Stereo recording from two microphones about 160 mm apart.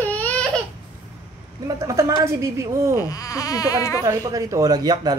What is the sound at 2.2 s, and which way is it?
Speech, 20° right (ahead or behind).